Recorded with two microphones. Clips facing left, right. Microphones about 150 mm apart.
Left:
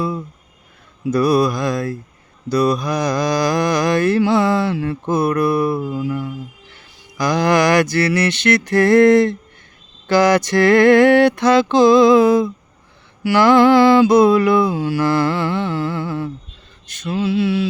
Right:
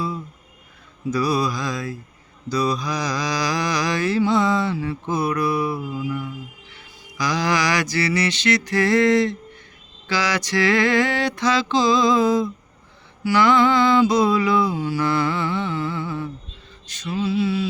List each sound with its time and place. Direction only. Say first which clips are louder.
1.1 s mantra: left 7 dB; 60° left (ahead or behind)
7.2 s mantra: left 6 dB; 55° left (ahead or behind); by 16.3 s 70° left (ahead or behind)
16.8 s male singing: left 4 dB; 55° left (ahead or behind); by 17.7 s 70° left (ahead or behind)